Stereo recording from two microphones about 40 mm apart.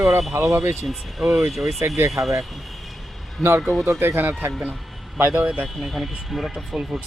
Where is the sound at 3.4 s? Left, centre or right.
Centre.